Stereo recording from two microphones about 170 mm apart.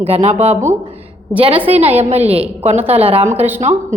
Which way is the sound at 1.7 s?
35° right (ahead or behind).